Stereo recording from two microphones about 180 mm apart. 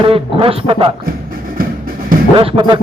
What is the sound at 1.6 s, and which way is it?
Music, 50° right (ahead or behind).